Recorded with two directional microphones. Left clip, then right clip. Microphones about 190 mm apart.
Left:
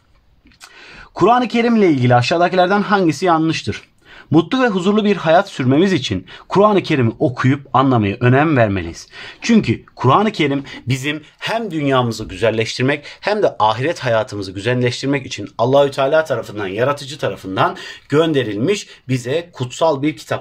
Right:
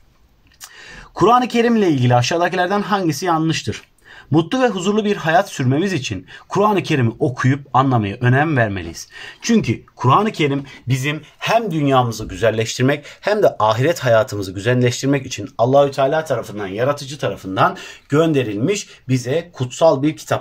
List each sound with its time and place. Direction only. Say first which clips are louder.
1.3 s speech: right 1 dB; 40° left (ahead or behind)
11.0 s speech: right 2 dB; 25° left (ahead or behind)
12.3 s speech: left 1 dB; 5° left (ahead or behind)